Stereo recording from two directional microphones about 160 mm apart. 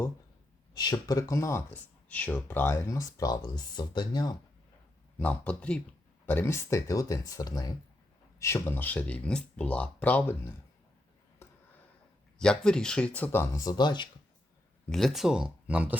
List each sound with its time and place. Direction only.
0.7 s speech: 25° left (ahead or behind)
5.2 s speech: 10° left (ahead or behind)
11.4 s a sound: 15° left (ahead or behind)
12.4 s speech: 5° left (ahead or behind); by 14.1 s 30° left (ahead or behind)
14.8 s speech: centre (ahead or behind)